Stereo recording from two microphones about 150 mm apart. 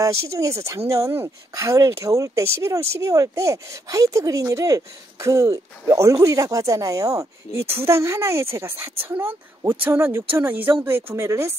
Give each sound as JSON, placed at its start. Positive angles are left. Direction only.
{"t": 0.0, "sound": "a woman's voice", "side_deg": -20}